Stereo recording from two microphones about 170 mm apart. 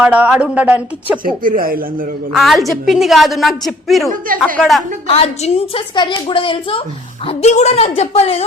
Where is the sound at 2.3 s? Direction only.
Centre (ahead or behind).